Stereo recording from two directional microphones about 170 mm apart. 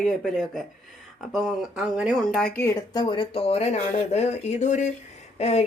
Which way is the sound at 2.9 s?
25° left (ahead or behind).